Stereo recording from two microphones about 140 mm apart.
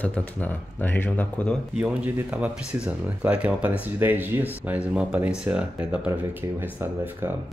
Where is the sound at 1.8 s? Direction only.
10° right (ahead or behind).